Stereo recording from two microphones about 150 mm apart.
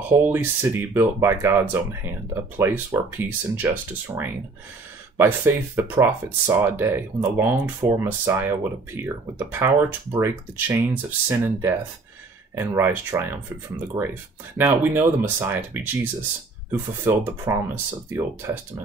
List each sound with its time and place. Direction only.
0.3 s speech: 15° right (ahead or behind)